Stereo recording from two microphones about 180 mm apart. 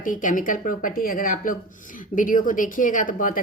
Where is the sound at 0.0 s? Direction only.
45° left (ahead or behind).